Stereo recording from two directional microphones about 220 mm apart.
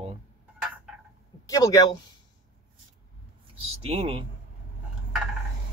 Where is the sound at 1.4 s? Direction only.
15° left (ahead or behind).